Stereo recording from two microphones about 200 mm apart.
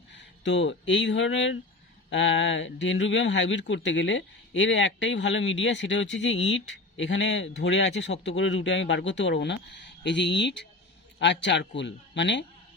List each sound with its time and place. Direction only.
0.1 s speech: 65° left (ahead or behind)